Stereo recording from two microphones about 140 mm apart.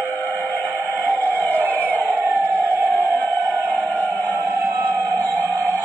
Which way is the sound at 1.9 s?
15° right (ahead or behind).